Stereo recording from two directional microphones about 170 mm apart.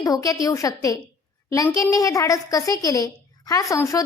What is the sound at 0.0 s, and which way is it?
A woman's voice, 20° left (ahead or behind).